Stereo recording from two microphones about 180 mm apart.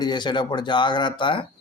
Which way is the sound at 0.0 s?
25° left (ahead or behind).